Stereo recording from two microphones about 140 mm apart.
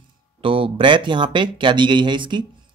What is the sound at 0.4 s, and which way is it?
A man's voice, 40° right (ahead or behind).